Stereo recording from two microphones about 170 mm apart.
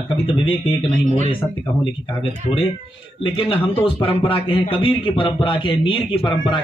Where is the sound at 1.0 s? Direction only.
45° right (ahead or behind).